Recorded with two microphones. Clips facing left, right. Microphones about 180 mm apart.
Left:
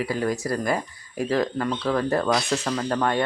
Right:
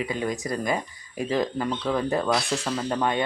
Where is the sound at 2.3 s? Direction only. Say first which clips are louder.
Left 2 dB; centre (ahead or behind).